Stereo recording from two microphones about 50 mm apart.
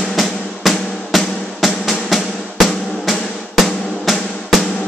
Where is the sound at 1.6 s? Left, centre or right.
Centre.